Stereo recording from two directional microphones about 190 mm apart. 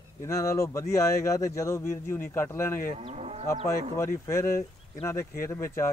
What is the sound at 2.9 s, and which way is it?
Livestock, 35° right (ahead or behind).